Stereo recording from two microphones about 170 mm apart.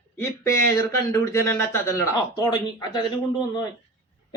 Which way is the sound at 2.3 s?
25° left (ahead or behind).